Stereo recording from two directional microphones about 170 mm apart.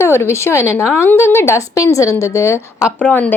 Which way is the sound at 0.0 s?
15° left (ahead or behind).